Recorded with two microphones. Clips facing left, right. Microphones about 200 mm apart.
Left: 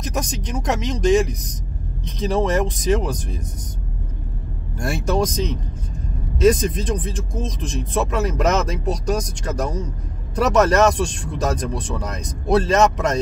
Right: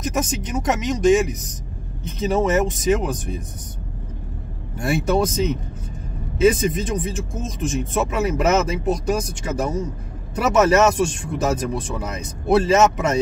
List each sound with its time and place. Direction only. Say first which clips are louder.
0.0 s speech: right 3 dB; 5° right (ahead or behind)
4.7 s speech: right 2 dB; 5° right (ahead or behind)